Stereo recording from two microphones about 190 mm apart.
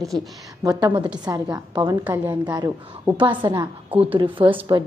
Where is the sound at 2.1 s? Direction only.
10° right (ahead or behind); by 4.8 s 25° right (ahead or behind).